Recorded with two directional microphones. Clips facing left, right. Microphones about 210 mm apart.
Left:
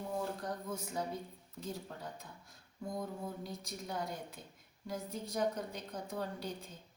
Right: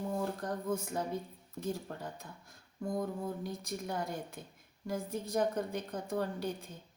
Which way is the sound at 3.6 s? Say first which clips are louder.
Right 3 dB; 50° right (ahead or behind).